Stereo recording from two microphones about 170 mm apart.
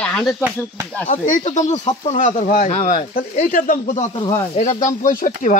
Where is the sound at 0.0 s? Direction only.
5° left (ahead or behind).